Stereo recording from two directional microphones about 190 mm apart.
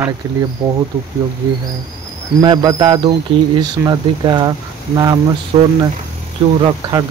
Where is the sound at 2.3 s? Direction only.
20° right (ahead or behind).